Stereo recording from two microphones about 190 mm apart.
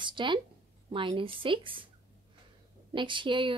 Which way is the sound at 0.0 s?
25° right (ahead or behind).